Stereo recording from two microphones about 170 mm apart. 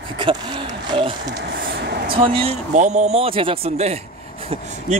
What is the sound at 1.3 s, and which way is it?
Speech, 70° right (ahead or behind).